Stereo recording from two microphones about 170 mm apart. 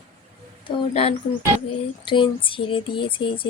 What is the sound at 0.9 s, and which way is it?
A woman's voice, 35° left (ahead or behind).